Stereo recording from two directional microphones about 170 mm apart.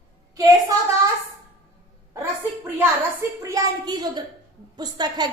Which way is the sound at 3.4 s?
20° right (ahead or behind).